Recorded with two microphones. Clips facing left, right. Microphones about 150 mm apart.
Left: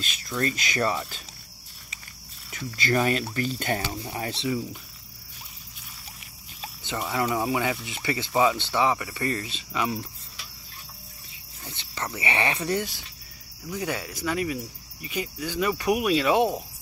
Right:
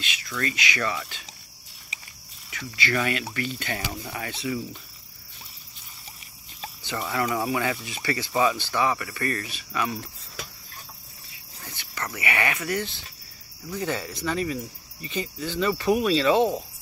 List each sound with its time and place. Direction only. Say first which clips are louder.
0.0 s speech: left 3 dB; 40° left (ahead or behind)
2.7 s speech: left 3 dB; 40° left (ahead or behind)
4.0 s speech: left 2 dB; 30° left (ahead or behind)
7.0 s speech: even; 15° left (ahead or behind)
11.6 s speech: left 1 dB; 20° left (ahead or behind)
13.7 s speech: right 1 dB; 10° left (ahead or behind)